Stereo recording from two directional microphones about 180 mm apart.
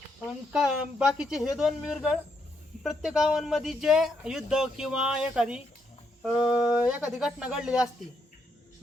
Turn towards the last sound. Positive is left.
turn(degrees=-5)  # may be behind; listen again after turning